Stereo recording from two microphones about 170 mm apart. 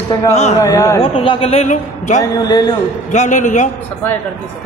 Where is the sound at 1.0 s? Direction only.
35° left (ahead or behind).